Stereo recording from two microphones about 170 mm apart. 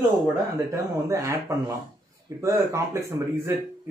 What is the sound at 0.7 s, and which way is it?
Speech, 20° right (ahead or behind).